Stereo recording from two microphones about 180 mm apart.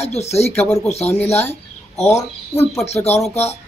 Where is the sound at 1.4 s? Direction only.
10° left (ahead or behind).